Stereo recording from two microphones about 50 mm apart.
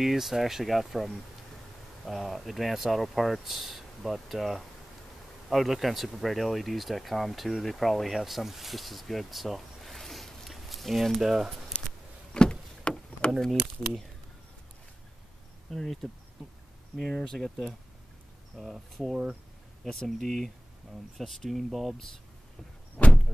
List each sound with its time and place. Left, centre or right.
0.0 s speech: centre
11.2 s speech: centre
12.4 s vehicle: centre
15.7 s speech: centre
18.6 s speech: centre
23.0 s door: centre